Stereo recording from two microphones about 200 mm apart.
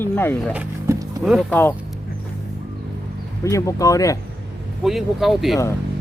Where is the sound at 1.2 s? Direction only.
Centre (ahead or behind).